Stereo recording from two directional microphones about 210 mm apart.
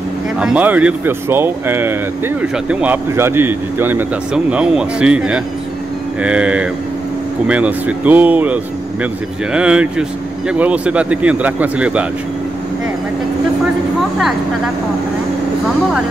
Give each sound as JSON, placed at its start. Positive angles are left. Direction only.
{"t": 0.4, "sound": "speech", "side_deg": -5}